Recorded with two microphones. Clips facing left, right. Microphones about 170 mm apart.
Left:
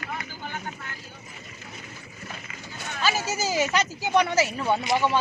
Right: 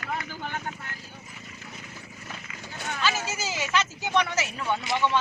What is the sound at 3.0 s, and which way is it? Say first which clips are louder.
Speech: left 4 dB; 40° left (ahead or behind).